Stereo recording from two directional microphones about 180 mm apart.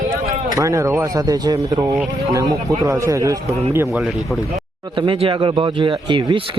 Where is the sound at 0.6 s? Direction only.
15° right (ahead or behind).